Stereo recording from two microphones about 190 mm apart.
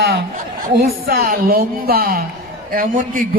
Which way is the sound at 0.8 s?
50° right (ahead or behind).